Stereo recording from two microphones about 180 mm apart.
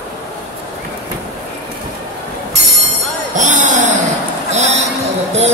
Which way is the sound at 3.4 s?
45° right (ahead or behind).